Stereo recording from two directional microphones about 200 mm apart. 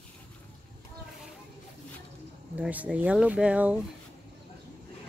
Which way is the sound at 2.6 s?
5° right (ahead or behind).